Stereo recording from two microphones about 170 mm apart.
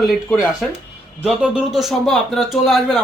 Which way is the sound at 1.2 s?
5° right (ahead or behind).